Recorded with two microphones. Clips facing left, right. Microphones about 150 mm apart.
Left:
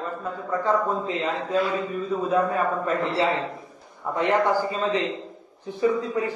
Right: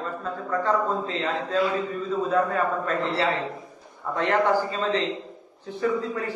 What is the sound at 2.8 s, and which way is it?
A man's voice, 15° left (ahead or behind).